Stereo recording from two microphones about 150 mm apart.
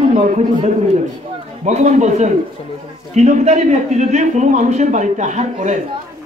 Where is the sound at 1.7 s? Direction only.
50° right (ahead or behind).